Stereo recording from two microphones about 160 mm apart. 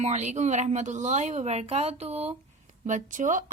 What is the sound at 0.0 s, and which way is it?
Speech, 45° right (ahead or behind).